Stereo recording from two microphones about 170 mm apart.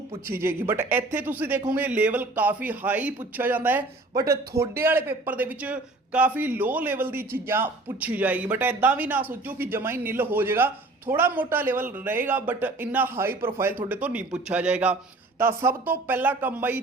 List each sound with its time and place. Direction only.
0.3 s speech: 15° right (ahead or behind)
4.1 s speech: 20° right (ahead or behind)